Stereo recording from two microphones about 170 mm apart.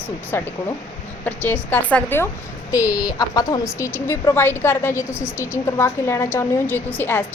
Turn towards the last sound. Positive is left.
turn(degrees=10)  # may be behind; listen again after turning